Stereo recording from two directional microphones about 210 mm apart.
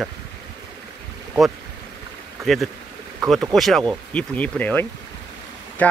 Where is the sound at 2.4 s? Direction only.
Centre (ahead or behind).